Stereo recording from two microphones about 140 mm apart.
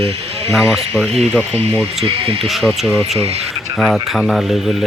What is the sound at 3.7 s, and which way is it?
Speech, 5° left (ahead or behind).